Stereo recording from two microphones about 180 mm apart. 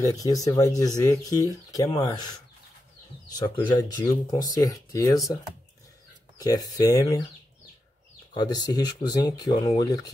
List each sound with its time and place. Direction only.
0.0 s speech: 20° left (ahead or behind)
3.3 s speech: 25° left (ahead or behind)
8.4 s speech: 20° left (ahead or behind)